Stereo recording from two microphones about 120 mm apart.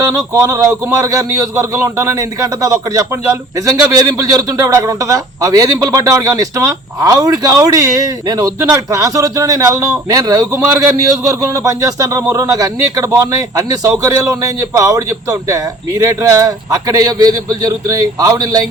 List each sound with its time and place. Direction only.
0.1 s a man's voice: 30° right (ahead or behind)